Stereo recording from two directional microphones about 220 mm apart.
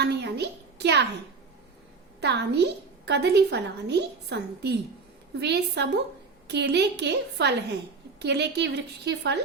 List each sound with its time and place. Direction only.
0.0 s a child's voice: 50° right (ahead or behind)
2.2 s a woman's voice: 50° right (ahead or behind)